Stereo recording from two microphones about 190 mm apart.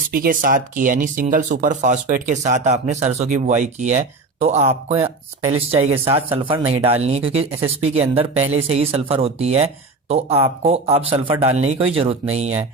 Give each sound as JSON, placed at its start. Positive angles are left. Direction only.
{"t": 0.1, "sound": "speech", "side_deg": -50}